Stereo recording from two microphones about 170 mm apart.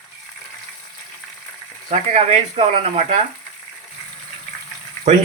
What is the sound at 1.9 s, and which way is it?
Speech, 40° right (ahead or behind).